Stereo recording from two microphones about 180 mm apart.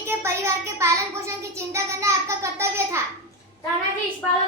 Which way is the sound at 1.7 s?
15° right (ahead or behind).